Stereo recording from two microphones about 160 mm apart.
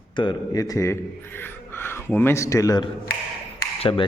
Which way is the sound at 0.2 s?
25° left (ahead or behind).